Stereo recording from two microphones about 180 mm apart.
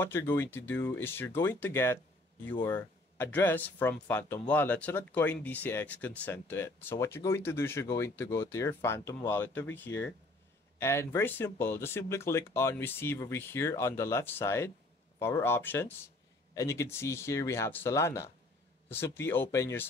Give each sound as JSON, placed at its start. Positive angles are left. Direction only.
{"t": 0.0, "sound": "speech", "side_deg": 15}